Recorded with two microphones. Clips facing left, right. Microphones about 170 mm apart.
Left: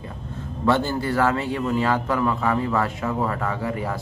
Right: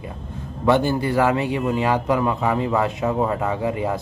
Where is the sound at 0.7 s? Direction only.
15° right (ahead or behind).